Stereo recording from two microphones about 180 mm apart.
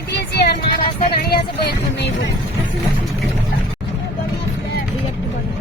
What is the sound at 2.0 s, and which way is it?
Speech, 75° left (ahead or behind).